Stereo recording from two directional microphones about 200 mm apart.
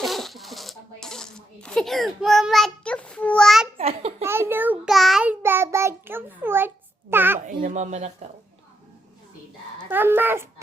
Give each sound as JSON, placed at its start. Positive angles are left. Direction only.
{"t": 0.0, "sound": "coin", "side_deg": 0}
{"t": 3.8, "sound": "babbling", "side_deg": -30}
{"t": 4.2, "sound": "child singing", "side_deg": -10}
{"t": 7.1, "sound": "a sound", "side_deg": -10}
{"t": 7.3, "sound": "speech", "side_deg": -35}
{"t": 9.9, "sound": "speech", "side_deg": -10}